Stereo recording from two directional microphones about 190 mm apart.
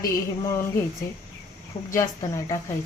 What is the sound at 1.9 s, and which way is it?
Speech, 15° left (ahead or behind).